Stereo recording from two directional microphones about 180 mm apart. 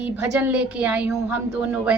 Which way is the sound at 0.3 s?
10° right (ahead or behind).